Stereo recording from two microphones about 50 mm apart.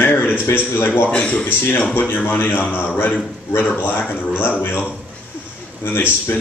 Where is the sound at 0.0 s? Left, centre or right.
Left.